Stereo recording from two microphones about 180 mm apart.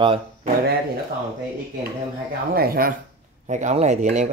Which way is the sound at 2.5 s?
55° right (ahead or behind).